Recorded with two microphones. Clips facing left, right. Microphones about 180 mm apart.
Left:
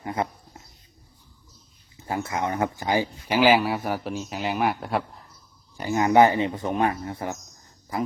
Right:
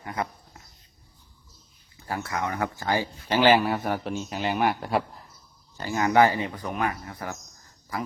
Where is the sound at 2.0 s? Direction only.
20° left (ahead or behind); by 5.0 s centre (ahead or behind).